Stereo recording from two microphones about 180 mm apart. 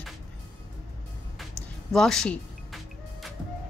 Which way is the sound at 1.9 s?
Centre (ahead or behind).